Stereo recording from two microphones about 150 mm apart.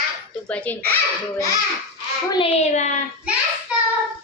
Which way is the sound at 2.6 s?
55° left (ahead or behind).